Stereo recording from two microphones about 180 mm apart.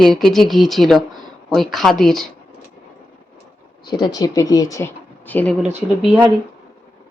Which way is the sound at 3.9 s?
25° left (ahead or behind).